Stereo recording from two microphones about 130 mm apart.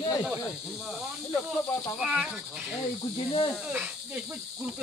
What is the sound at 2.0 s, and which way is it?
Speech, 5° right (ahead or behind).